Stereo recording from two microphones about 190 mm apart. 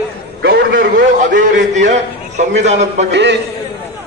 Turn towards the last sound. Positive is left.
turn(degrees=-65)  # may be behind; listen again after turning